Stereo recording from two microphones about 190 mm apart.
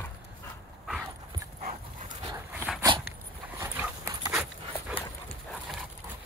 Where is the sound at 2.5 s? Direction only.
10° right (ahead or behind).